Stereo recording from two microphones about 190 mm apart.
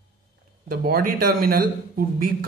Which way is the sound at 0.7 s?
50° right (ahead or behind).